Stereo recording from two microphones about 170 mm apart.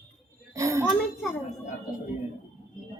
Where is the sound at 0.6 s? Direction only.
20° right (ahead or behind).